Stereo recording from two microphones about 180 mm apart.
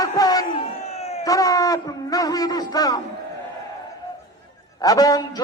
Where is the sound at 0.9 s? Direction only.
35° left (ahead or behind).